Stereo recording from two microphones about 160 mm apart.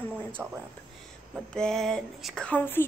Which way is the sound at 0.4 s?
5° right (ahead or behind).